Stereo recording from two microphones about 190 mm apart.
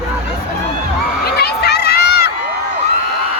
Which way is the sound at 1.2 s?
55° left (ahead or behind).